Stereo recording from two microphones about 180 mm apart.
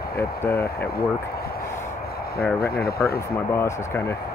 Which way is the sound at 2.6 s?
60° left (ahead or behind).